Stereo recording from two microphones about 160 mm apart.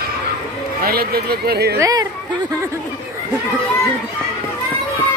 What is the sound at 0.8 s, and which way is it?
Speech, 70° right (ahead or behind).